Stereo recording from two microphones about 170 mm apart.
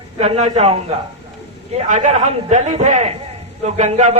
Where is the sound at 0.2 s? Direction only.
40° right (ahead or behind).